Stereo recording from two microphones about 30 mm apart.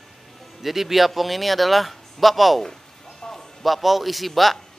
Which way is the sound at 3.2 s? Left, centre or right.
Left.